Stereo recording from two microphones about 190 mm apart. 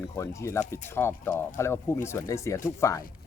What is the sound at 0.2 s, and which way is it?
A man's voice, 15° left (ahead or behind).